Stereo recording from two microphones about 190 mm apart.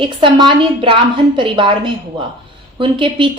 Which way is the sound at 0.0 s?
25° right (ahead or behind).